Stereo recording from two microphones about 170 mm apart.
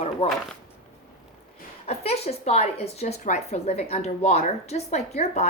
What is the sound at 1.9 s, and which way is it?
A woman's voice, 40° left (ahead or behind).